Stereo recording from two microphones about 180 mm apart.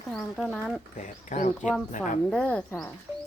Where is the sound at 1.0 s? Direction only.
45° left (ahead or behind).